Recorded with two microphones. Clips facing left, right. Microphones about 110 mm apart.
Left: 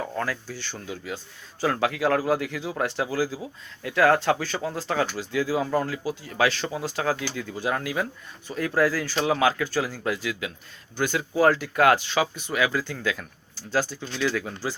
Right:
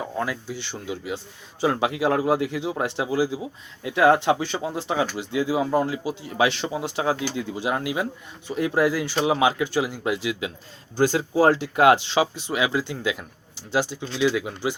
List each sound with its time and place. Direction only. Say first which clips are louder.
0.0 s speech: right 1 dB; 15° right (ahead or behind)